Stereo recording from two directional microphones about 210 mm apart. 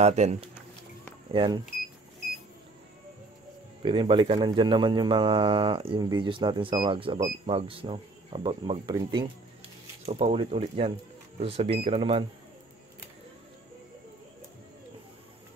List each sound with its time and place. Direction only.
0.0 s speech: 30° right (ahead or behind)
3.8 s speech: 20° right (ahead or behind)